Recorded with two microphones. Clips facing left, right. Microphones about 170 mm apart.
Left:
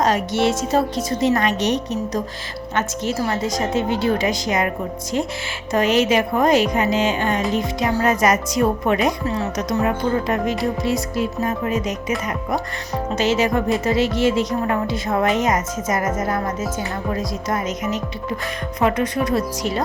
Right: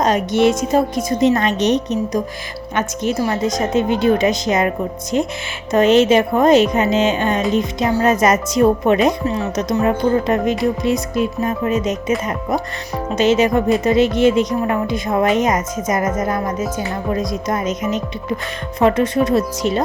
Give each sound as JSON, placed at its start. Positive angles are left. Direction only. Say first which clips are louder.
{"t": 0.0, "sound": "speech", "louder": "right 4 dB", "side_deg": -20}
{"t": 13.1, "sound": "speech", "louder": "right 5 dB", "side_deg": -20}